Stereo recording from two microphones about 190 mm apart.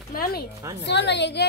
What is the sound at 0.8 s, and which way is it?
Speech, 65° left (ahead or behind).